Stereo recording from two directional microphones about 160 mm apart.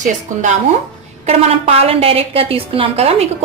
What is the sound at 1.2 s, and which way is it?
A woman's voice, 40° right (ahead or behind).